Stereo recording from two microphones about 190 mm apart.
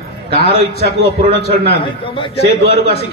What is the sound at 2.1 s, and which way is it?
Speech, 25° left (ahead or behind).